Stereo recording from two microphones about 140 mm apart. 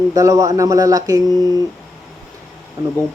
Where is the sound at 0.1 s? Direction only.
25° right (ahead or behind).